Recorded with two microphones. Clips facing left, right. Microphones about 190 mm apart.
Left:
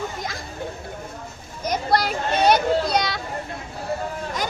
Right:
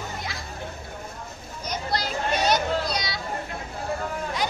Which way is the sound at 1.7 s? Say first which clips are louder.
Left 7 dB; 55° left (ahead or behind).